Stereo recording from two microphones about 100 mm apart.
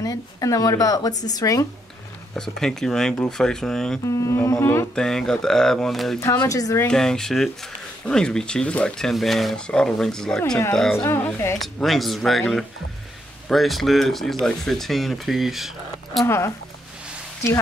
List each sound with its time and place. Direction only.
0.0 s speech: 35° left (ahead or behind)
2.3 s speech: 5° left (ahead or behind)
4.0 s humming: 30° left (ahead or behind)
4.9 s speech: 5° left (ahead or behind)
6.4 s speech: 35° left (ahead or behind)
6.9 s speech: 5° left (ahead or behind)
11.1 s humming: 25° left (ahead or behind)
11.6 s speech: centre (ahead or behind)
16.3 s humming: 30° left (ahead or behind)